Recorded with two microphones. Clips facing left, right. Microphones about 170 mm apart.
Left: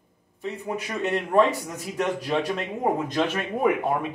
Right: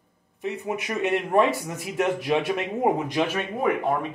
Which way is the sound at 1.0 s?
15° right (ahead or behind).